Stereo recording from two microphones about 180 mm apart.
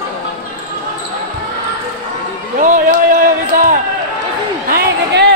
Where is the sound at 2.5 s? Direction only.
45° right (ahead or behind).